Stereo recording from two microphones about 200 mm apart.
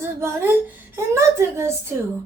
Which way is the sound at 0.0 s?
10° right (ahead or behind).